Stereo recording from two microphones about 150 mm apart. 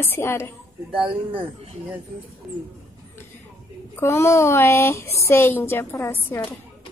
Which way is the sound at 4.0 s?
15° left (ahead or behind).